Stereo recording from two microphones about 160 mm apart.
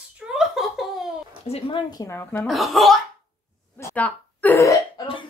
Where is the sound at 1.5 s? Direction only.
30° left (ahead or behind).